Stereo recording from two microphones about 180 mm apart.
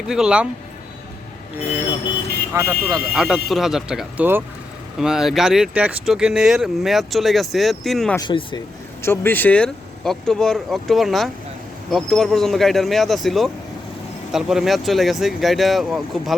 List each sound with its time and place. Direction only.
0.1 s speech: 5° right (ahead or behind)
2.5 s speech: 15° right (ahead or behind)
3.2 s speech: centre (ahead or behind)
8.1 s speech: 25° left (ahead or behind)
9.0 s speech: 15° left (ahead or behind)